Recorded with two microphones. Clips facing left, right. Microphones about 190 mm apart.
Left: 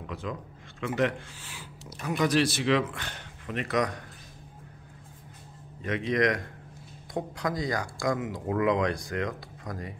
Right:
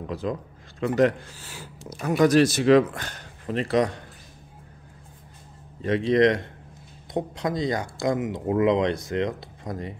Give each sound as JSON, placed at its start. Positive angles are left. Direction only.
{"t": 0.0, "sound": "speech", "side_deg": -35}
{"t": 5.8, "sound": "speech", "side_deg": -30}